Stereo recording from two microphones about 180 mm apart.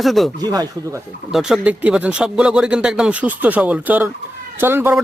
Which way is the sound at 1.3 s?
5° right (ahead or behind).